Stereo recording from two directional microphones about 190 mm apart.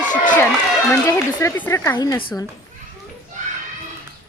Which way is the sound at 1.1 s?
15° left (ahead or behind).